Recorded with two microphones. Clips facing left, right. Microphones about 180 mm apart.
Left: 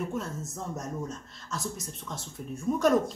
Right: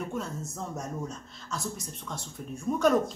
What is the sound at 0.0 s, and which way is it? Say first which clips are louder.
Speech: left 1 dB; centre (ahead or behind).